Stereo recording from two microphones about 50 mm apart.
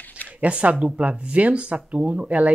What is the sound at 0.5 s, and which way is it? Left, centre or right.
Speech, right.